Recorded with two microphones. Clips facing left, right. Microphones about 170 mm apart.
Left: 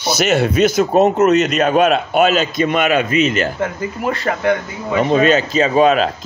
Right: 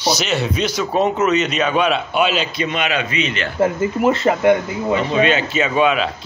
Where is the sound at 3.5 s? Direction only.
25° right (ahead or behind).